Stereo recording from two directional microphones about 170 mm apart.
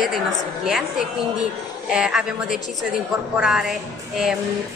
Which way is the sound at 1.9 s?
5° right (ahead or behind).